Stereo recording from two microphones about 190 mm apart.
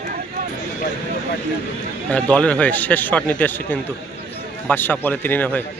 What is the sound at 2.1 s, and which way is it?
A man's voice, 5° left (ahead or behind).